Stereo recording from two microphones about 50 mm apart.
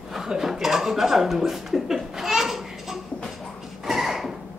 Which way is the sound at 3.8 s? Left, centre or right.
Centre.